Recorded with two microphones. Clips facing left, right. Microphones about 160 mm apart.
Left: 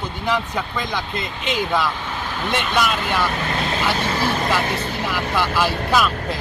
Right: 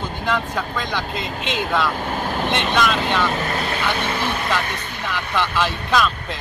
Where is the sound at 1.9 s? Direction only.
45° right (ahead or behind).